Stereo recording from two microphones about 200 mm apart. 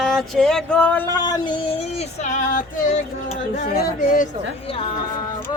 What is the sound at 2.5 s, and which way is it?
Speech, 40° left (ahead or behind).